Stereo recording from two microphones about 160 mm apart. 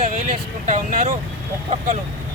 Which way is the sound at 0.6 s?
50° right (ahead or behind).